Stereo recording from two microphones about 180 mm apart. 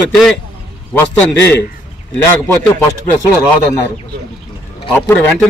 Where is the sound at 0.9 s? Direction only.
10° left (ahead or behind).